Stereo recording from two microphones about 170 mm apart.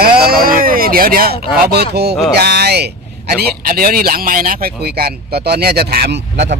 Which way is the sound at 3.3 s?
60° right (ahead or behind).